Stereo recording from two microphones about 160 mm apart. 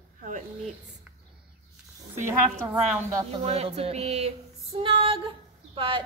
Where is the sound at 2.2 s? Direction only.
15° right (ahead or behind).